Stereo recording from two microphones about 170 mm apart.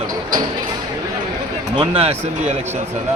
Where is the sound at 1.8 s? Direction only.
35° right (ahead or behind).